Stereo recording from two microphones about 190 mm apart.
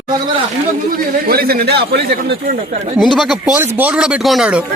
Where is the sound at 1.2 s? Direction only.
50° right (ahead or behind).